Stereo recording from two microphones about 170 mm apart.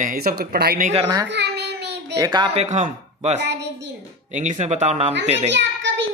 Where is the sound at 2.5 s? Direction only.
40° right (ahead or behind).